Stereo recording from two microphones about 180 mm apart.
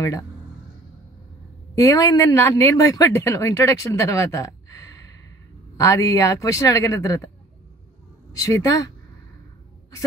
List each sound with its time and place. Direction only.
1.8 s speech: 20° left (ahead or behind)
8.3 s speech: 20° left (ahead or behind)